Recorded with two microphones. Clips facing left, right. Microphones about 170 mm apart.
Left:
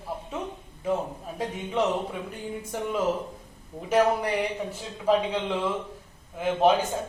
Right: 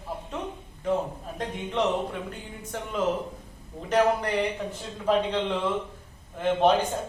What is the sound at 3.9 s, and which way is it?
A man's voice, 10° left (ahead or behind).